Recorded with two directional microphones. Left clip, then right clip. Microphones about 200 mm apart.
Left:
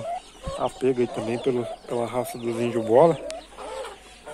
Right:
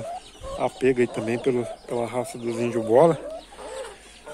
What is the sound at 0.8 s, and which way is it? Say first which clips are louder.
Speech: right 2 dB; 15° right (ahead or behind).